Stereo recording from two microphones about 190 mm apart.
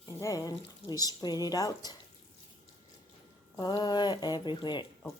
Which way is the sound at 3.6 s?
20° left (ahead or behind).